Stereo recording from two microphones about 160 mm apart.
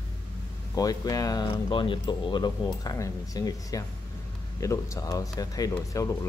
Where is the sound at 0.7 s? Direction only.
20° left (ahead or behind).